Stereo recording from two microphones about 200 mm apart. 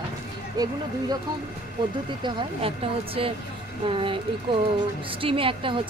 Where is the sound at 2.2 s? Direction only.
30° right (ahead or behind).